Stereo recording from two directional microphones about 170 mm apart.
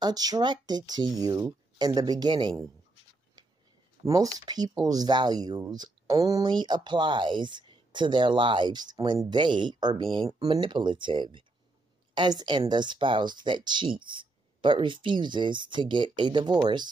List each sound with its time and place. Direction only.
0.0 s speech: 20° right (ahead or behind)
4.0 s speech: 20° right (ahead or behind)